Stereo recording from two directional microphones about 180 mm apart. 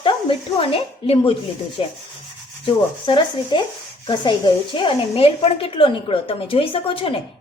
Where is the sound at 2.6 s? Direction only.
25° left (ahead or behind).